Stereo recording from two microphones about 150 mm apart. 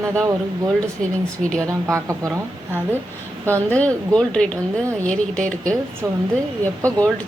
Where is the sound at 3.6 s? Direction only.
10° left (ahead or behind).